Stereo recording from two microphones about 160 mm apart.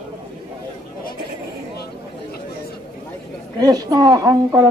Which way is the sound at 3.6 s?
25° right (ahead or behind).